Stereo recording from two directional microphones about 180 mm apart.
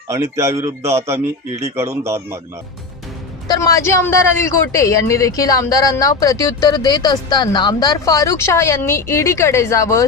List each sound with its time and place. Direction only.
0.1 s a man's voice: 15° right (ahead or behind)
3.5 s speech: 20° left (ahead or behind)